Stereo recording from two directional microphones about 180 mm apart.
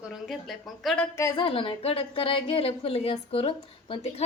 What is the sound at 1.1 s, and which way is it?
Speech, 20° left (ahead or behind).